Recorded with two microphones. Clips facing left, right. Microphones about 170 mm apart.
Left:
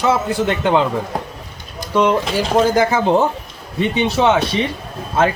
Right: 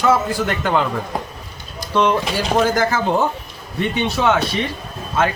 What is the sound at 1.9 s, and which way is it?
Speech, 15° left (ahead or behind).